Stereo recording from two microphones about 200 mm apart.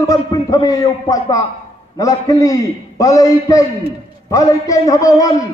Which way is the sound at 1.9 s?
15° left (ahead or behind).